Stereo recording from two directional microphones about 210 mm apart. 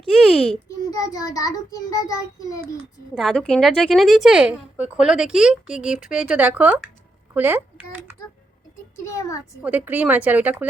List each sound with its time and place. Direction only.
0.2 s a woman's voice: centre (ahead or behind)
0.9 s a child's voice: 15° left (ahead or behind)
3.2 s a woman's voice: centre (ahead or behind)
9.0 s a child's voice: 15° left (ahead or behind)
9.6 s a woman's voice: 5° right (ahead or behind)